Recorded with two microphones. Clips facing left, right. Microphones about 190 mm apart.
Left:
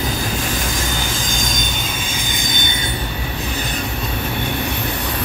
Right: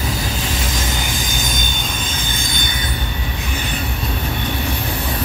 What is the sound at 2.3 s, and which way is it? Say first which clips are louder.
Train wheels squealing: left 1 dB; 20° left (ahead or behind).